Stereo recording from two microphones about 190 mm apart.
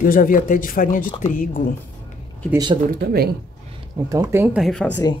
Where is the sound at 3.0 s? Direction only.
55° right (ahead or behind).